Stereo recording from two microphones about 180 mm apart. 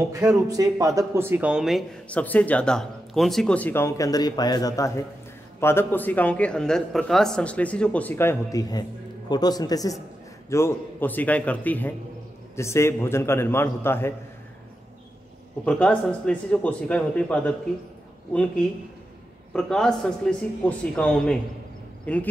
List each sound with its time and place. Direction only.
0.1 s a man's voice: 20° right (ahead or behind); by 14.1 s 15° left (ahead or behind)
15.6 s a man's voice: 5° left (ahead or behind)